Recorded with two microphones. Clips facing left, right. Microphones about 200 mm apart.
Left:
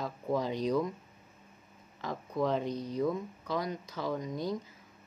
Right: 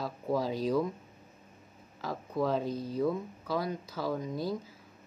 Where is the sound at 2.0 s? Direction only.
5° right (ahead or behind).